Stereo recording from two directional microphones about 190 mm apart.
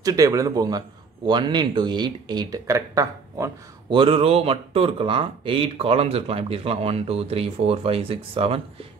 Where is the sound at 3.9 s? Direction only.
30° right (ahead or behind).